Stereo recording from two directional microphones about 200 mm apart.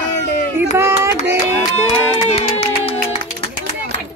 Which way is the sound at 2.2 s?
30° left (ahead or behind).